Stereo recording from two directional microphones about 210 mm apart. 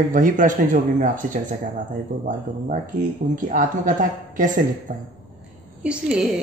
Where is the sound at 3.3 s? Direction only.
40° right (ahead or behind).